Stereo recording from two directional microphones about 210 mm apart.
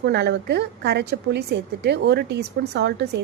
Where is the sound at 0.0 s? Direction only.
55° right (ahead or behind).